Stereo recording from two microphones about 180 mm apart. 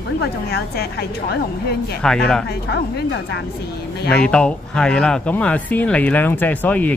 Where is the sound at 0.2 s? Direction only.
60° left (ahead or behind).